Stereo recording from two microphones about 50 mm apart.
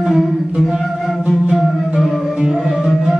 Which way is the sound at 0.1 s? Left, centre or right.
Centre.